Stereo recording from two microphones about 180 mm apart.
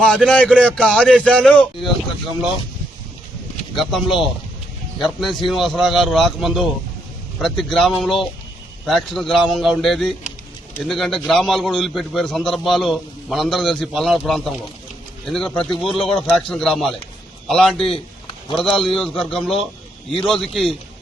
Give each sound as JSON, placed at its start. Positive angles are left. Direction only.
{"t": 0.0, "sound": "a man's voice", "side_deg": 5}
{"t": 3.8, "sound": "a man's voice", "side_deg": 0}